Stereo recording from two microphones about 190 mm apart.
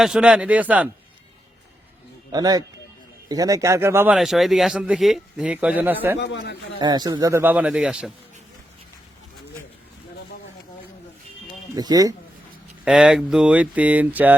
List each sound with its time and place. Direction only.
0.0 s a man's voice: 5° right (ahead or behind)
2.3 s a man's voice: 20° right (ahead or behind)
6.1 s a man's voice: 70° left (ahead or behind)
6.7 s a man's voice: 20° right (ahead or behind); by 8.1 s 5° right (ahead or behind)
11.7 s speech: 20° right (ahead or behind)
12.8 s a man's voice: 5° right (ahead or behind)